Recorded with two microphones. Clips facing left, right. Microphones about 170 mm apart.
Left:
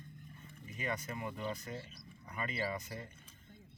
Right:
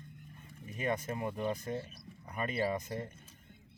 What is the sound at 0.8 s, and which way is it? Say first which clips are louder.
Speech: right 5 dB; 50° right (ahead or behind).